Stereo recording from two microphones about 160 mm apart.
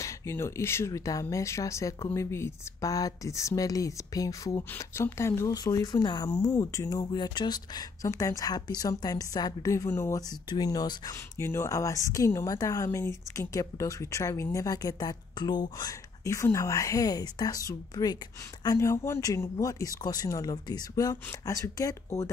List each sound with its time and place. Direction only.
0.0 s speech: 15° left (ahead or behind)